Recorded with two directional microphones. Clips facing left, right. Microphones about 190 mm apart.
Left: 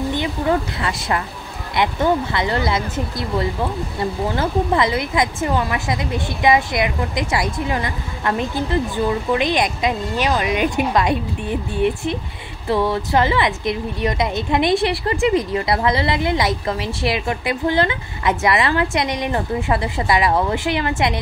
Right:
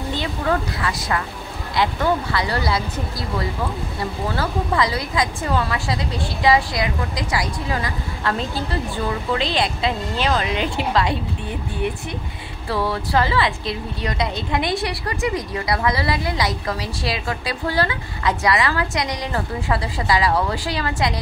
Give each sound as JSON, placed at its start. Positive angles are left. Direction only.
{"t": 0.1, "sound": "speech", "side_deg": 20}